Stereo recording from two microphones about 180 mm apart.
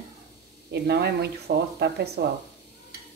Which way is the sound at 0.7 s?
65° right (ahead or behind).